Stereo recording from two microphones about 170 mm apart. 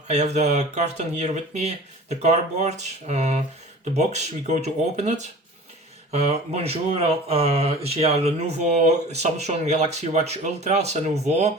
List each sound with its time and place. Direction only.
0.1 s speech: 45° right (ahead or behind)